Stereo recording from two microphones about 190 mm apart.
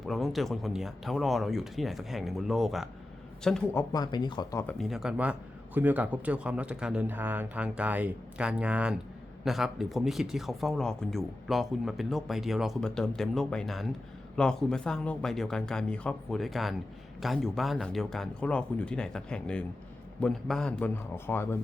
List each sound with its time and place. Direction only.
0.0 s speech: centre (ahead or behind)
3.8 s speech: 20° left (ahead or behind)
4.6 s a man's voice: centre (ahead or behind)